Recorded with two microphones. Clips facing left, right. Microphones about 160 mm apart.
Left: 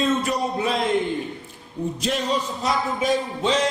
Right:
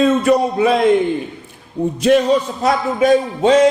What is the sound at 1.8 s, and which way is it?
A man's voice, 60° right (ahead or behind).